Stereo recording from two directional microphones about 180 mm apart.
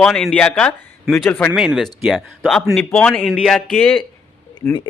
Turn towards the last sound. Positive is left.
turn(degrees=10)  # may be behind; listen again after turning